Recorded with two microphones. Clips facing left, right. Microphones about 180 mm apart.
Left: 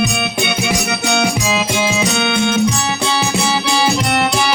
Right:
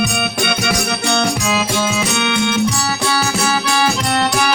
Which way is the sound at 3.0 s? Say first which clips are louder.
Even; 25° left (ahead or behind).